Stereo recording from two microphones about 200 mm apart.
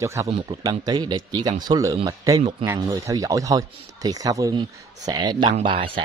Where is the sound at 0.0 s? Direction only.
15° right (ahead or behind).